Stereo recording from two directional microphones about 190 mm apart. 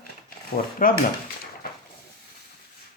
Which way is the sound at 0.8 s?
45° left (ahead or behind).